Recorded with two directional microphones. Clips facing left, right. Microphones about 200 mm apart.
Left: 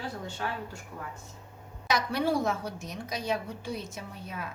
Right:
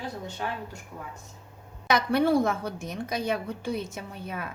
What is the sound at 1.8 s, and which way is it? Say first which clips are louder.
A woman's voice: right 5 dB; 55° right (ahead or behind).